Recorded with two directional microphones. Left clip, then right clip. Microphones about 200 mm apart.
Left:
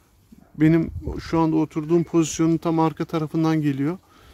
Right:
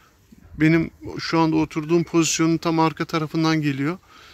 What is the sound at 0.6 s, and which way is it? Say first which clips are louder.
Speech: even; 15° left (ahead or behind).